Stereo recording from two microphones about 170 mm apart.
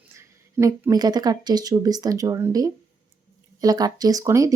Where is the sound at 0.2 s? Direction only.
20° right (ahead or behind).